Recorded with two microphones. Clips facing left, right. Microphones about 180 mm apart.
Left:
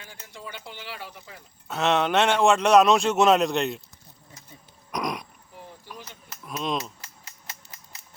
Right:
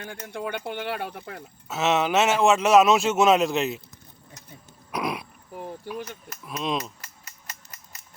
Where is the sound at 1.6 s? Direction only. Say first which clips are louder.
Even; 5° right (ahead or behind).